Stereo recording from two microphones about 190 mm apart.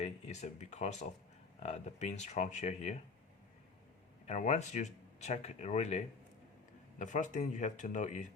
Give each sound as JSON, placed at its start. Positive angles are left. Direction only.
{"t": 0.0, "sound": "speech", "side_deg": 35}
{"t": 4.3, "sound": "speech", "side_deg": 40}
{"t": 7.0, "sound": "speech", "side_deg": 40}